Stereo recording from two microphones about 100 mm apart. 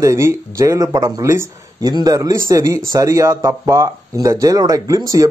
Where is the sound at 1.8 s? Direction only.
40° right (ahead or behind).